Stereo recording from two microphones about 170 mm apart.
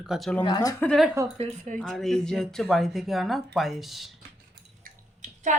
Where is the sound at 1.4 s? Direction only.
45° right (ahead or behind).